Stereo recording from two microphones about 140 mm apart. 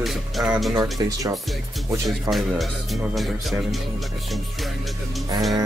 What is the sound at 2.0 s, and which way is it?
Speech, centre (ahead or behind).